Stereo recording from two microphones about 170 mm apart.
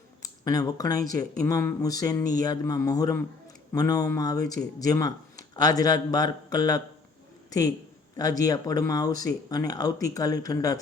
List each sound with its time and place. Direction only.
0.2 s speech: 20° left (ahead or behind)
8.1 s speech: 20° left (ahead or behind)